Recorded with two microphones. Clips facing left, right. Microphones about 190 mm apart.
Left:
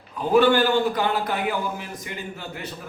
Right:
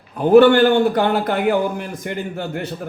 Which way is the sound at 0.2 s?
60° right (ahead or behind).